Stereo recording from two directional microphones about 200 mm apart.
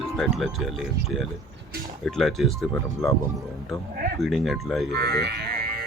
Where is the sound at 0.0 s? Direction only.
Centre (ahead or behind).